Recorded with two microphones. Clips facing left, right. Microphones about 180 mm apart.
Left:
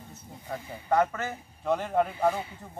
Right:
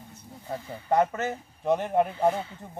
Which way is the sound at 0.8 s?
20° right (ahead or behind).